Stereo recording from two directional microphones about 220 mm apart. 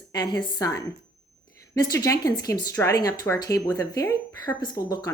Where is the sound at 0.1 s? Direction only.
20° left (ahead or behind).